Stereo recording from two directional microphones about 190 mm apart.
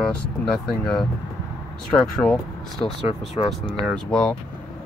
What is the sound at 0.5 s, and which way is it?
Speech, centre (ahead or behind).